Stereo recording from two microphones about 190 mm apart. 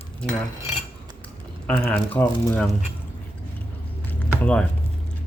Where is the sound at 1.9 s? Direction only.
10° left (ahead or behind).